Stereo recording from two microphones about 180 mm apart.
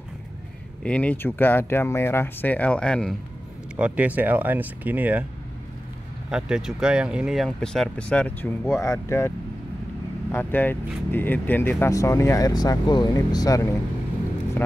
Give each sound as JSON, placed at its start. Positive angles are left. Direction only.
{"t": 0.8, "sound": "speech", "side_deg": 5}
{"t": 3.7, "sound": "speech", "side_deg": -5}
{"t": 6.3, "sound": "speech", "side_deg": -5}
{"t": 10.3, "sound": "speech", "side_deg": 10}